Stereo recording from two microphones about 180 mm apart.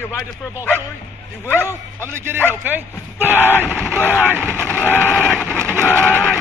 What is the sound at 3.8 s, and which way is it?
Speech, 10° right (ahead or behind).